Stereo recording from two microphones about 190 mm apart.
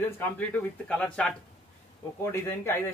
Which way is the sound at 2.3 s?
10° left (ahead or behind).